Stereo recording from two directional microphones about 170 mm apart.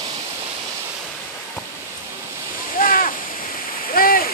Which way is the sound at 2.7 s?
55° left (ahead or behind).